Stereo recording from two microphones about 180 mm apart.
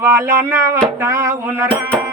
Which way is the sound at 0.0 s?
15° right (ahead or behind).